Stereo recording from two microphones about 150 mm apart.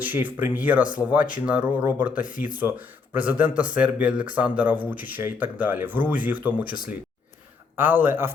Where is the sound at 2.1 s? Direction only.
65° left (ahead or behind).